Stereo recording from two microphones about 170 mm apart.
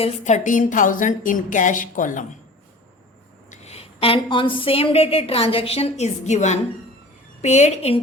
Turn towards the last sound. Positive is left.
turn(degrees=40)  # may be behind; listen again after turning